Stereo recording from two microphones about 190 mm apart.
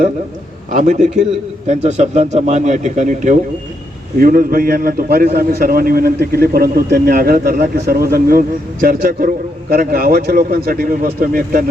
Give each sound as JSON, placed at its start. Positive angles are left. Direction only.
{"t": 0.7, "sound": "a man's voice", "side_deg": -40}